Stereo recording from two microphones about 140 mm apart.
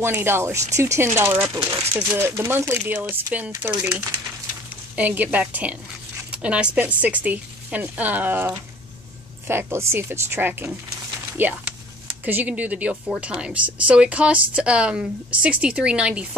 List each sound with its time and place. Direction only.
0.0 s speech: 15° right (ahead or behind)